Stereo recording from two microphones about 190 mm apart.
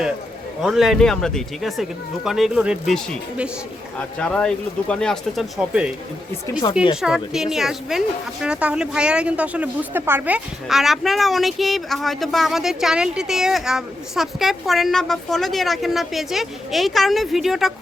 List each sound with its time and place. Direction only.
0.6 s speech: centre (ahead or behind)
6.5 s speech: 25° left (ahead or behind)
6.9 s speech: 5° right (ahead or behind)